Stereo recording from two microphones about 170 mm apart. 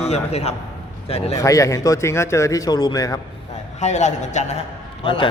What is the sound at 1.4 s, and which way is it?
A man's voice, 20° left (ahead or behind).